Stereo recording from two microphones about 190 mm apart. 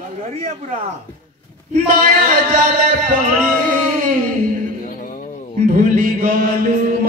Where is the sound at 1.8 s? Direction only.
45° right (ahead or behind).